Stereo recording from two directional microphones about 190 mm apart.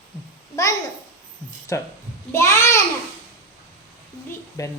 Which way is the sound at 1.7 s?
15° left (ahead or behind).